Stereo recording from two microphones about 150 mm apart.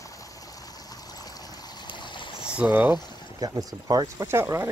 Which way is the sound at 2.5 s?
10° right (ahead or behind).